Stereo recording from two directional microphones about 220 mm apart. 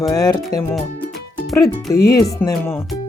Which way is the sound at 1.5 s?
15° left (ahead or behind).